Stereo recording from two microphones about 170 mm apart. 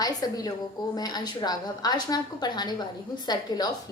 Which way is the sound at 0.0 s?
20° left (ahead or behind).